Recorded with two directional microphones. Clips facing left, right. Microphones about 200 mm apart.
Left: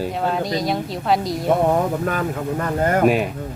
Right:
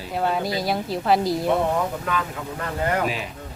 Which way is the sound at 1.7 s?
45° left (ahead or behind).